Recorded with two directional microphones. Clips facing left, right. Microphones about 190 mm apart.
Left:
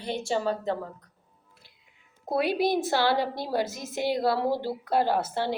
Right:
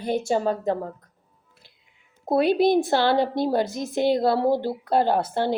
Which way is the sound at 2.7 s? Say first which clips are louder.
Right 5 dB; 50° right (ahead or behind).